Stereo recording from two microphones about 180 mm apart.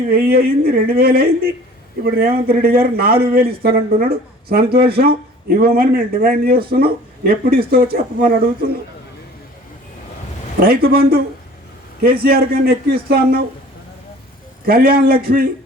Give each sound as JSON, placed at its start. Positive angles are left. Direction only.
{"t": 0.1, "sound": "a man's voice", "side_deg": -55}
{"t": 10.6, "sound": "a man's voice", "side_deg": -55}
{"t": 14.7, "sound": "a man's voice", "side_deg": -55}